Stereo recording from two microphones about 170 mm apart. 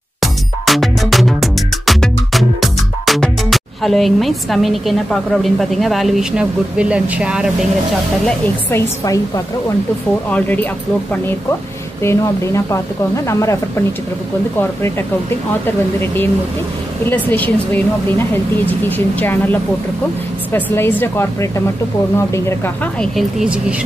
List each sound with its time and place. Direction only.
0.2 s music: centre (ahead or behind)
8.3 s a woman's voice: 15° left (ahead or behind)
12.0 s a woman's voice: 15° left (ahead or behind)
23.1 s speech: 5° right (ahead or behind)